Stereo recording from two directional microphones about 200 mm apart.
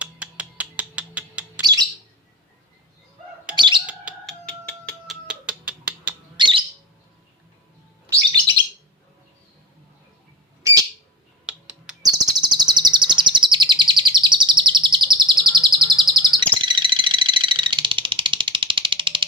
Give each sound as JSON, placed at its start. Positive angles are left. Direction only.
{"t": 0.0, "sound": "bird", "side_deg": -5}
{"t": 1.6, "sound": "bird", "side_deg": -20}
{"t": 3.5, "sound": "bird", "side_deg": -25}
{"t": 3.8, "sound": "bird", "side_deg": -5}
{"t": 4.4, "sound": "a sound", "side_deg": 5}
{"t": 5.3, "sound": "finger snapping", "side_deg": -5}
{"t": 6.3, "sound": "bird", "side_deg": -25}
{"t": 10.6, "sound": "bird", "side_deg": -15}
{"t": 11.4, "sound": "bird", "side_deg": -5}
{"t": 12.1, "sound": "chirp", "side_deg": -20}
{"t": 16.6, "sound": "a sound", "side_deg": -25}